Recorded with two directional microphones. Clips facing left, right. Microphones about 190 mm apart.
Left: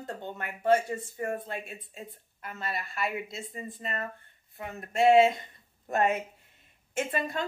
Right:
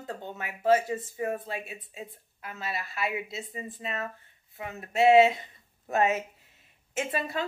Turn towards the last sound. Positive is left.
turn(degrees=-5)  # may be behind; listen again after turning